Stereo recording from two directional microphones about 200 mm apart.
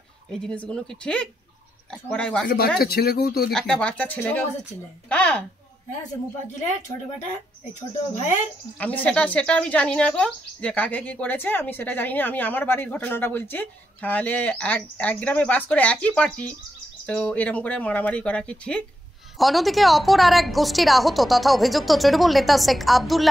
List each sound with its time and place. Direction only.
0.3 s a woman's voice: 5° left (ahead or behind)
2.4 s speech: 50° left (ahead or behind)
3.5 s a woman's voice: 5° left (ahead or behind)
8.1 s speech: 35° left (ahead or behind)
8.7 s a woman's voice: 5° left (ahead or behind)